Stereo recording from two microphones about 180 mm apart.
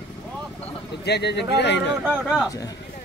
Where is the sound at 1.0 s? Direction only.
70° left (ahead or behind).